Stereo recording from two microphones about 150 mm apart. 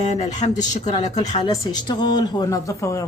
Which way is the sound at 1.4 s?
30° left (ahead or behind).